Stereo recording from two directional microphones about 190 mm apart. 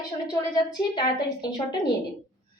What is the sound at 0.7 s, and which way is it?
Speech, 20° left (ahead or behind).